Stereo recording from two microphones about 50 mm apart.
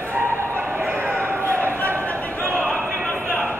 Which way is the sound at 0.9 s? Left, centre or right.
Right.